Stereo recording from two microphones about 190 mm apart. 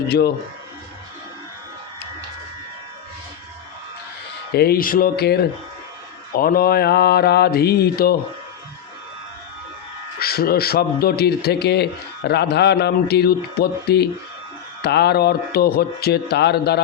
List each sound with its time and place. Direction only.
4.5 s a man's voice: 55° left (ahead or behind)
10.2 s a man's voice: 55° left (ahead or behind)